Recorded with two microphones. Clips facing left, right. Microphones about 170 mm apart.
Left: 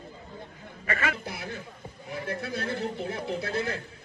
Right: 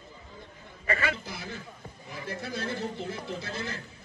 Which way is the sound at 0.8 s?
30° right (ahead or behind).